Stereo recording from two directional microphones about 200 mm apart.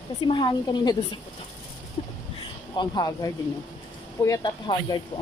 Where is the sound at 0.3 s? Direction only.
25° left (ahead or behind).